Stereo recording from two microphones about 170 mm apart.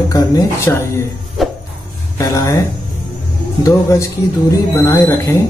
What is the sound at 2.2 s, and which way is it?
Speech, 20° left (ahead or behind).